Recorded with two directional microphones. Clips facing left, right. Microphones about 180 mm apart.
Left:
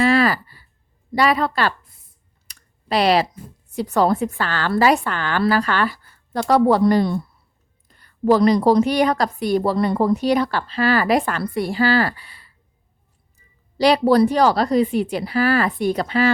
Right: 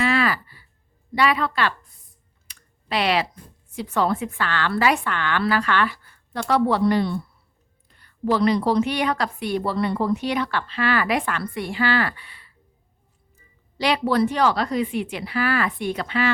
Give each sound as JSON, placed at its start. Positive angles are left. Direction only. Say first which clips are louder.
{"t": 0.0, "sound": "a sound", "louder": "left 5 dB", "side_deg": 40}
{"t": 1.1, "sound": "a woman's voice", "louder": "left 3 dB", "side_deg": 40}
{"t": 2.5, "sound": "clicking", "louder": "left 5 dB", "side_deg": 40}
{"t": 3.7, "sound": "a woman's voice", "louder": "left 5 dB", "side_deg": 40}
{"t": 13.7, "sound": "a woman's voice", "louder": "left 6 dB", "side_deg": 35}